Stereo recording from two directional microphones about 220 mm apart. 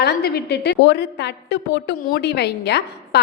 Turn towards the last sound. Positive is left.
turn(degrees=50)  # may be behind; listen again after turning